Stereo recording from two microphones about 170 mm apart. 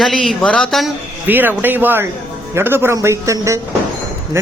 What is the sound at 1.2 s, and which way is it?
A man's voice, 10° right (ahead or behind).